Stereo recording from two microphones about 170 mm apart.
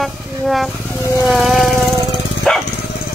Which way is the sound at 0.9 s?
15° left (ahead or behind).